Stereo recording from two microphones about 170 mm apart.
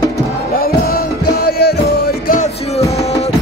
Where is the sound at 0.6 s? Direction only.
60° left (ahead or behind).